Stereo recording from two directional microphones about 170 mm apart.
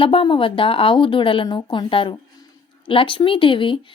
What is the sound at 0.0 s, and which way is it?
A woman's voice, 30° left (ahead or behind).